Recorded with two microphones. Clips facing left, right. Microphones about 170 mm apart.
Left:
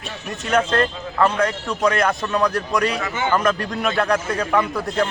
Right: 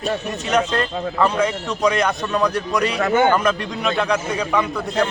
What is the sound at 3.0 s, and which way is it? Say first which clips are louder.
Speech: right 8 dB; 60° right (ahead or behind).